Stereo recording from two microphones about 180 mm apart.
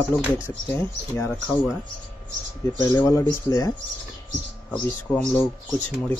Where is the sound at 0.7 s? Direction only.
10° left (ahead or behind).